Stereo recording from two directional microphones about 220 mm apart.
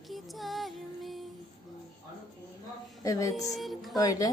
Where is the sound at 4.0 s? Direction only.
15° left (ahead or behind).